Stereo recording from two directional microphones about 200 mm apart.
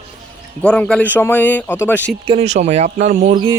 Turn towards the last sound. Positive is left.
turn(degrees=-40)  # may be behind; listen again after turning